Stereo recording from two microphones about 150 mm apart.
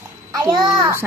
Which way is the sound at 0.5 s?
30° right (ahead or behind).